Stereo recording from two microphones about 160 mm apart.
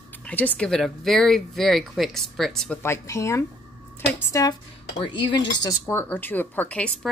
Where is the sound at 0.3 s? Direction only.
10° left (ahead or behind).